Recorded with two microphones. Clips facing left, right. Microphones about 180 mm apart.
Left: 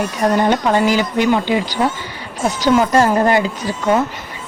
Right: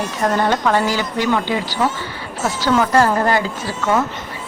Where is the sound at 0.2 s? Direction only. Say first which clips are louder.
Left 2 dB; 15° left (ahead or behind).